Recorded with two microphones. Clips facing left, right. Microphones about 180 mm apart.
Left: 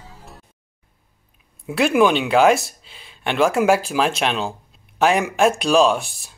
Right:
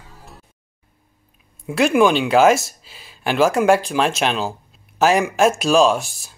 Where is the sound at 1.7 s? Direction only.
Centre (ahead or behind).